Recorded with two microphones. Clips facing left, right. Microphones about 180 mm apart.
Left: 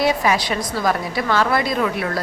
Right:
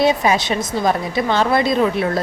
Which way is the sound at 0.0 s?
25° right (ahead or behind).